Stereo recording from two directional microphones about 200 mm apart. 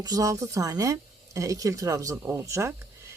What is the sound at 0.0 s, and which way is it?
Speech, 15° right (ahead or behind).